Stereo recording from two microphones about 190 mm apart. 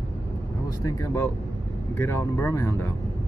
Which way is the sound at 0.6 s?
15° left (ahead or behind).